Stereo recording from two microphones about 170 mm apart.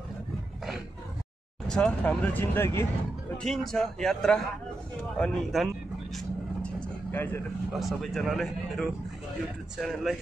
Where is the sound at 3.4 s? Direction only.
Centre (ahead or behind).